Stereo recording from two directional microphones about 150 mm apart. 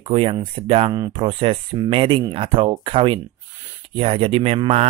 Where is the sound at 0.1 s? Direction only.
35° right (ahead or behind).